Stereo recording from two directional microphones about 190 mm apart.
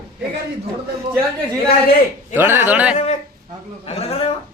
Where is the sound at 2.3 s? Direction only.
10° right (ahead or behind).